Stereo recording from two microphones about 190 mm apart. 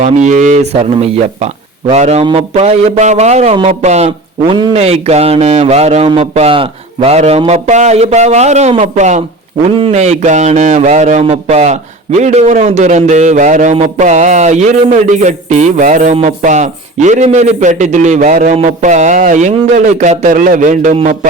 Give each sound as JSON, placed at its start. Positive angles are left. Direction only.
{"t": 0.0, "sound": "a man's voice", "side_deg": -40}
{"t": 1.9, "sound": "a man's voice", "side_deg": -35}